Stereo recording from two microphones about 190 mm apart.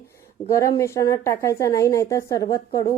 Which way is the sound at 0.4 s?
15° left (ahead or behind).